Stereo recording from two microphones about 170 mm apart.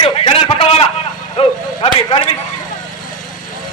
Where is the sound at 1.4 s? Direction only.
35° left (ahead or behind).